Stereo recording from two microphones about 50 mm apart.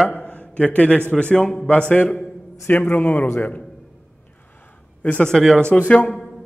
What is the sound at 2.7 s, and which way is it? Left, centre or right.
Speech, left.